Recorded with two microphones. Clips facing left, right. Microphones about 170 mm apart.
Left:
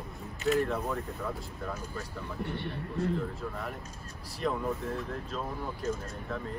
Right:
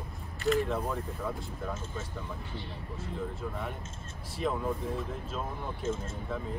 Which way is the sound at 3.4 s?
Centre (ahead or behind).